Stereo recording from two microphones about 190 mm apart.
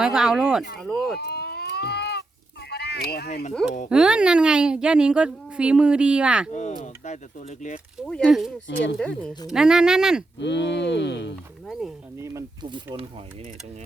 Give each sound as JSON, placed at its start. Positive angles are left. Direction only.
{"t": 0.0, "sound": "a woman's voice", "side_deg": -5}
{"t": 1.2, "sound": "livestock", "side_deg": 60}
{"t": 2.6, "sound": "fowl", "side_deg": 60}
{"t": 3.8, "sound": "a woman's voice", "side_deg": -5}
{"t": 6.5, "sound": "speech", "side_deg": 40}
{"t": 8.0, "sound": "a woman's voice", "side_deg": 5}
{"t": 10.4, "sound": "speech", "side_deg": 70}
{"t": 12.2, "sound": "speech", "side_deg": -15}